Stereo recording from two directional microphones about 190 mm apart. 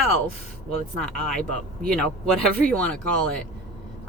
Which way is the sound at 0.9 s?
5° left (ahead or behind).